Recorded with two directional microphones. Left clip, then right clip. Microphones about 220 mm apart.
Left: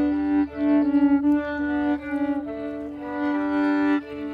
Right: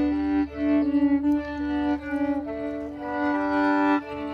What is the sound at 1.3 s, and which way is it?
Music, 10° left (ahead or behind).